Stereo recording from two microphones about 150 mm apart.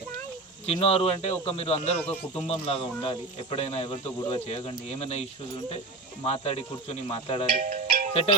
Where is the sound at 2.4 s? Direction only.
40° left (ahead or behind).